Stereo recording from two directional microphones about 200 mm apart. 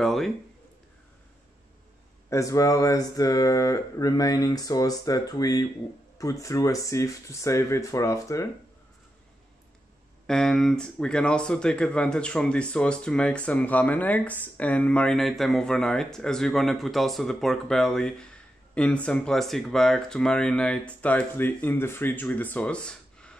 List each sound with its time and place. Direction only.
0.0 s speech: centre (ahead or behind)
2.2 s speech: 15° left (ahead or behind)
10.2 s speech: centre (ahead or behind)